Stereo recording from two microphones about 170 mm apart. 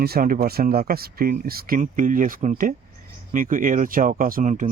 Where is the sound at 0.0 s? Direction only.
60° right (ahead or behind).